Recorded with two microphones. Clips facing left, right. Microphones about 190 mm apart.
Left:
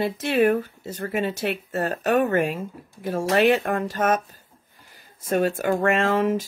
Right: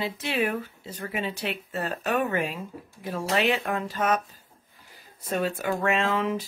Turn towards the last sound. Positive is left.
turn(degrees=45)  # may be behind; listen again after turning